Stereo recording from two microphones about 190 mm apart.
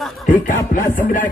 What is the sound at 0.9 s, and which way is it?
Music, 45° left (ahead or behind).